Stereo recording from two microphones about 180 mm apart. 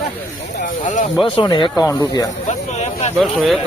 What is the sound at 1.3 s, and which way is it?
Speech, 30° left (ahead or behind).